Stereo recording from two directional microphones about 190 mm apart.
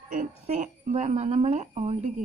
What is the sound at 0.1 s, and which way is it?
Speech, 40° right (ahead or behind).